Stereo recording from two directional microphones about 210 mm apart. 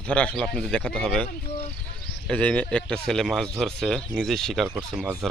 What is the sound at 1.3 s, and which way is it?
Speech, 30° left (ahead or behind).